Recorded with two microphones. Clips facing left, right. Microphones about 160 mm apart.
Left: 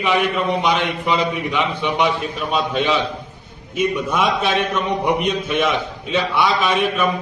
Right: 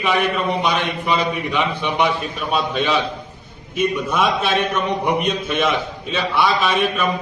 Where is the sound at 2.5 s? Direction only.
15° left (ahead or behind).